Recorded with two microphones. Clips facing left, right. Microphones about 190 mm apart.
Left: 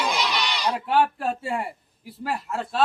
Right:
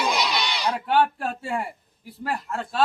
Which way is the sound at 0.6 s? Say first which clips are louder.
Even; 5° left (ahead or behind).